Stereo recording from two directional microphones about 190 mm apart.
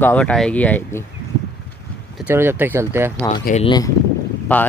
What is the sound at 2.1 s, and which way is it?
Speech, 10° right (ahead or behind).